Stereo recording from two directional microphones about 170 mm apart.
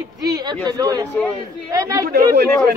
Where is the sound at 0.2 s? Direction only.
20° right (ahead or behind).